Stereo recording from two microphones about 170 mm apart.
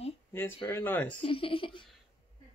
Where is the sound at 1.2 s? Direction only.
30° left (ahead or behind).